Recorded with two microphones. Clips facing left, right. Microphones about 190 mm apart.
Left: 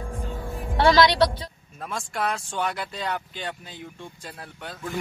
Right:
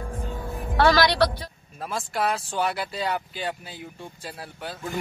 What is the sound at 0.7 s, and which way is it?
Speech, 25° left (ahead or behind).